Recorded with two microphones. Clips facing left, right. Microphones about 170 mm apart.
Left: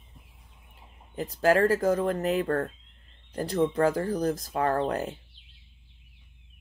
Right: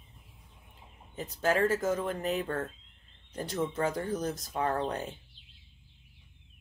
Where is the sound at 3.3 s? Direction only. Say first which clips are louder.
Left 7 dB; 35° left (ahead or behind).